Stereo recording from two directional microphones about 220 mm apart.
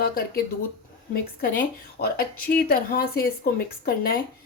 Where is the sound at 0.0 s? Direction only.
45° left (ahead or behind).